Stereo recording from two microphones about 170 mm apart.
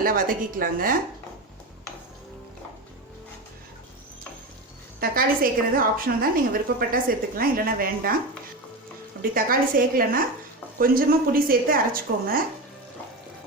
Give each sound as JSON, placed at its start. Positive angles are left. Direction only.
{"t": 0.0, "sound": "a woman's voice", "side_deg": -55}
{"t": 4.9, "sound": "a woman's voice", "side_deg": -60}
{"t": 9.3, "sound": "a woman's voice", "side_deg": -55}